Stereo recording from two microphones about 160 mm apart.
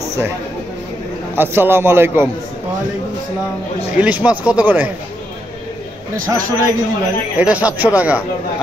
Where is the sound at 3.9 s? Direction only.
10° right (ahead or behind).